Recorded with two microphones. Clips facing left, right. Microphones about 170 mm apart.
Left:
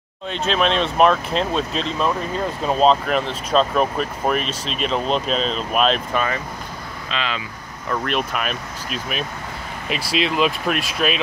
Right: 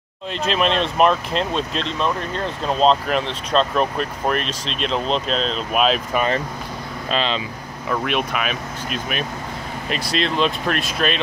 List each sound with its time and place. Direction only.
0.5 s speech: centre (ahead or behind)
7.1 s speech: 30° right (ahead or behind)
7.9 s speech: 5° right (ahead or behind)